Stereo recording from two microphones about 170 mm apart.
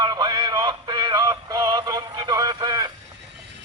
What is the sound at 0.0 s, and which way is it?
Synthetic singing, 25° right (ahead or behind).